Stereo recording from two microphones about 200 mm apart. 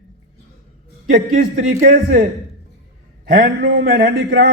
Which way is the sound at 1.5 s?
45° right (ahead or behind).